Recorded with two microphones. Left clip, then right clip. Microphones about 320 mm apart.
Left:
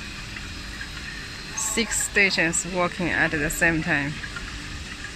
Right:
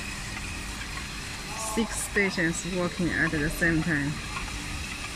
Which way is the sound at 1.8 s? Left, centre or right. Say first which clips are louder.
Left 6 dB; left.